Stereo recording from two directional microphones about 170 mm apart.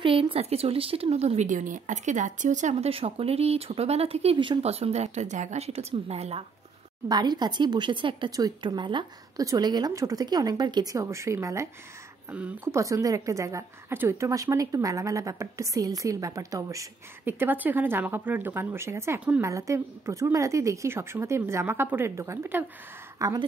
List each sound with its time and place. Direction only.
0.0 s speech: 30° right (ahead or behind)
7.1 s a woman's voice: 25° right (ahead or behind); by 12.8 s 10° right (ahead or behind)
12.8 s a woman's voice: 20° right (ahead or behind)